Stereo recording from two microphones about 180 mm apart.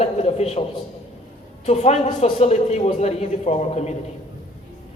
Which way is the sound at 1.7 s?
35° left (ahead or behind).